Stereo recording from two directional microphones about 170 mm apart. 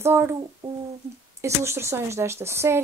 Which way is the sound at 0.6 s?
30° right (ahead or behind).